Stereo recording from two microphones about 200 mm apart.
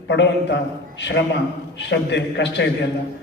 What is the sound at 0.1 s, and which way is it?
A man's voice, 65° left (ahead or behind).